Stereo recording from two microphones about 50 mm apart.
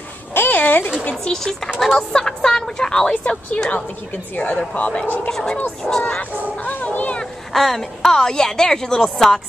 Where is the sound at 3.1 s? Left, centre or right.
Left.